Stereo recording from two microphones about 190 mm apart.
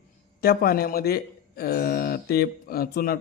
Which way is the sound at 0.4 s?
55° left (ahead or behind).